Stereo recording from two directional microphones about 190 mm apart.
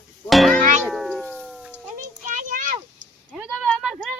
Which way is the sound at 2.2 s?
40° right (ahead or behind).